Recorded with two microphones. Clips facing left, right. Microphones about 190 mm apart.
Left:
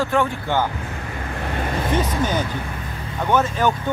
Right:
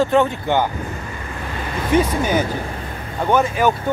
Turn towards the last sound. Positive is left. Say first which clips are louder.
# right 2 dB
turn(degrees=-10)  # may be behind; listen again after turning